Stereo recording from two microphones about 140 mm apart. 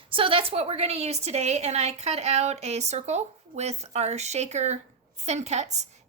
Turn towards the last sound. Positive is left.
turn(degrees=-55)  # may be behind; listen again after turning